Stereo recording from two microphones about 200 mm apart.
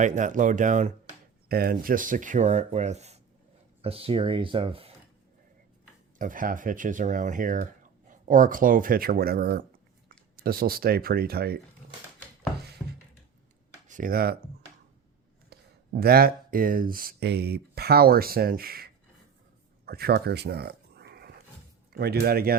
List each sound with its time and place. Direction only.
0.0 s speech: 40° right (ahead or behind)
6.1 s speech: 40° right (ahead or behind)
12.8 s a sound: 5° left (ahead or behind)
13.8 s speech: 40° right (ahead or behind)
15.4 s speech: 50° right (ahead or behind)
19.8 s a sound: 50° right (ahead or behind)
21.9 s speech: 50° right (ahead or behind)